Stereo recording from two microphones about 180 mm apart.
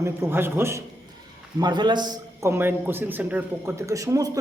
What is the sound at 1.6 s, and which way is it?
A man's voice, 25° right (ahead or behind).